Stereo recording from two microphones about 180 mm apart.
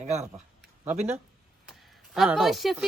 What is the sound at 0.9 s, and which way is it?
Speech, 35° right (ahead or behind).